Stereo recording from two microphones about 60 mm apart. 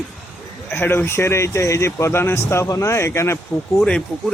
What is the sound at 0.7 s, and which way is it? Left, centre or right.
Speech, left.